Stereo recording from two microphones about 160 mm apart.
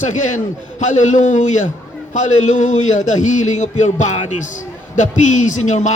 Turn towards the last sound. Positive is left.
turn(degrees=45)  # may be behind; listen again after turning